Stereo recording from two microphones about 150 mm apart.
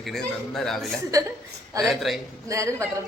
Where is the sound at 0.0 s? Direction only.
Centre (ahead or behind).